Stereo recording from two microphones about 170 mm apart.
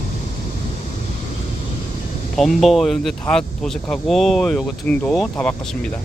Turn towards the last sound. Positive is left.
turn(degrees=5)  # may be behind; listen again after turning